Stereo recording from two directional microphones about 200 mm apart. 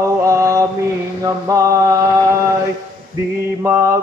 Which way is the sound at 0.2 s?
15° right (ahead or behind).